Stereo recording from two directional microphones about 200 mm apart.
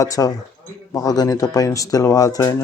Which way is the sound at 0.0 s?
15° left (ahead or behind).